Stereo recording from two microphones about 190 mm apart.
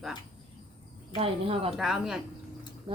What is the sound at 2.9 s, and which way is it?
Speech, 30° right (ahead or behind).